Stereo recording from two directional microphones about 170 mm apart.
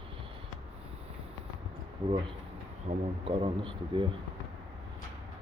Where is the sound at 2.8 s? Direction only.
35° right (ahead or behind).